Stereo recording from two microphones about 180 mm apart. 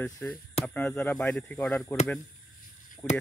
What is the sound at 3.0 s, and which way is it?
Speech, 10° left (ahead or behind).